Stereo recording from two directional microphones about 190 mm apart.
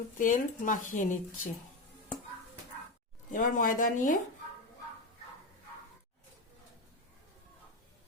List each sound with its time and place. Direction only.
0.2 s speech: 45° left (ahead or behind)
3.3 s speech: 45° left (ahead or behind)